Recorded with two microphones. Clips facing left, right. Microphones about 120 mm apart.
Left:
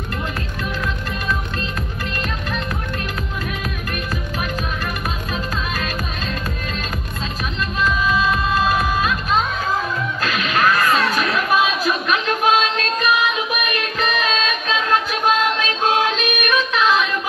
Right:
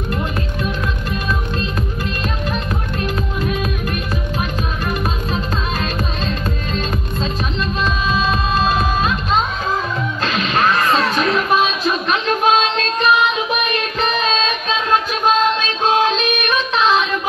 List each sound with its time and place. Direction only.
2.5 s music: 20° right (ahead or behind)